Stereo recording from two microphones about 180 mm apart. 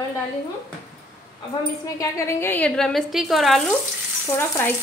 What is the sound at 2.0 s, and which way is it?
A woman's voice, 15° left (ahead or behind).